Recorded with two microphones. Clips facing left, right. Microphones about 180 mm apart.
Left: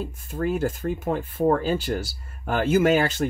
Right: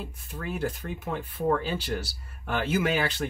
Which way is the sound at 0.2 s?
45° left (ahead or behind).